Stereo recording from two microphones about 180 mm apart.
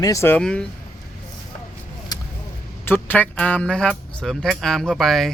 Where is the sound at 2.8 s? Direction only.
10° left (ahead or behind).